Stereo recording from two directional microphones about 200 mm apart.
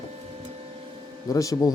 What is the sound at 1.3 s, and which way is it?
Speech, 15° left (ahead or behind).